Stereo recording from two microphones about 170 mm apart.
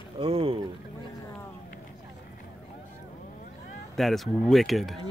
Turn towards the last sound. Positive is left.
turn(degrees=0)  # may be behind; listen again after turning